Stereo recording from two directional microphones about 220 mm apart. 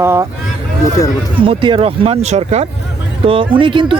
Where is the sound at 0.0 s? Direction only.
10° right (ahead or behind).